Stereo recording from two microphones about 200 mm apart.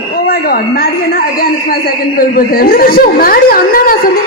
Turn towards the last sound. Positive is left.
turn(degrees=45)  # may be behind; listen again after turning